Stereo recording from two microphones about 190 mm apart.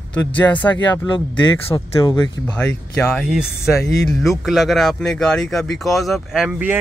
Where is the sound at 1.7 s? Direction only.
20° left (ahead or behind).